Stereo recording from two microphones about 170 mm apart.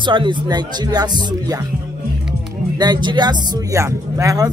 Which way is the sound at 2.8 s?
25° right (ahead or behind).